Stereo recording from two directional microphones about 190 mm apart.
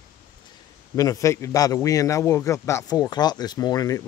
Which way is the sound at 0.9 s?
15° left (ahead or behind).